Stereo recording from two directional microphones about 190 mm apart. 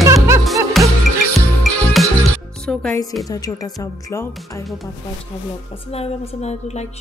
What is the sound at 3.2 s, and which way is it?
Speech, 20° left (ahead or behind).